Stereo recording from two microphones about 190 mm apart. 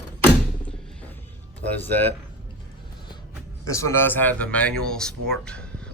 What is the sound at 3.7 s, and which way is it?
Speech, 15° left (ahead or behind).